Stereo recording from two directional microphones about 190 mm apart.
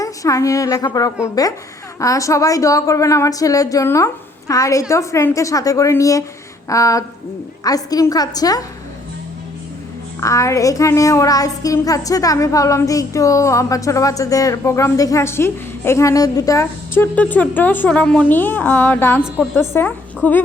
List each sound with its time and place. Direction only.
0.0 s a child's voice: 15° left (ahead or behind)
10.2 s a child's voice: 15° left (ahead or behind)